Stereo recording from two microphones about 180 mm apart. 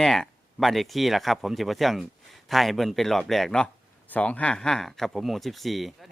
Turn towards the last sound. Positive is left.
turn(degrees=0)  # may be behind; listen again after turning